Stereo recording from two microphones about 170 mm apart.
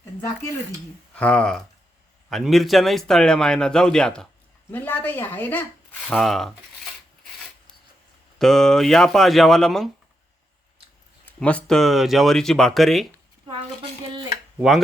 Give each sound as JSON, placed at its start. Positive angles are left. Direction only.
{"t": 1.1, "sound": "speech", "side_deg": 5}
{"t": 8.4, "sound": "speech", "side_deg": 0}
{"t": 11.3, "sound": "speech", "side_deg": 10}
{"t": 14.1, "sound": "a sound", "side_deg": -30}